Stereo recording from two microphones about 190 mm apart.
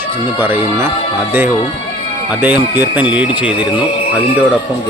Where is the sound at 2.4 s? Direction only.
10° right (ahead or behind).